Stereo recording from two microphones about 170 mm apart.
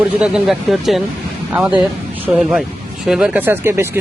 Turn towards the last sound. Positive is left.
turn(degrees=-15)  # may be behind; listen again after turning